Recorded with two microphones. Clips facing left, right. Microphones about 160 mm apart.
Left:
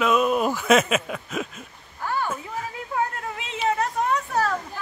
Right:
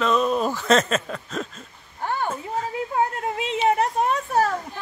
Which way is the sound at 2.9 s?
25° right (ahead or behind).